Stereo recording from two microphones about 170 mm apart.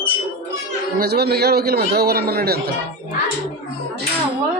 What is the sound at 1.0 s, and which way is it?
A man's voice, 70° right (ahead or behind).